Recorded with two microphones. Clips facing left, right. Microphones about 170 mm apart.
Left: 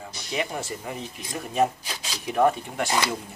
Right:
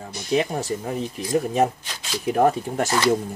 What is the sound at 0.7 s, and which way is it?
Speech, 40° right (ahead or behind).